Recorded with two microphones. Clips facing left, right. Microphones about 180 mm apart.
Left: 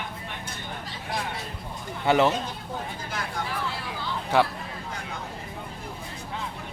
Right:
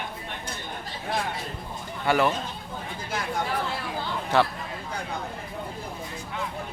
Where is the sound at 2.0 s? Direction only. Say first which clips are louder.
Left 2 dB; 20° left (ahead or behind).